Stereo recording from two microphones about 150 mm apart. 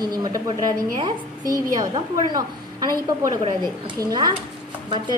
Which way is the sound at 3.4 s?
30° right (ahead or behind).